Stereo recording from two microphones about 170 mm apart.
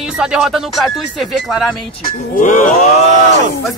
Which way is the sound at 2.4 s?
50° left (ahead or behind).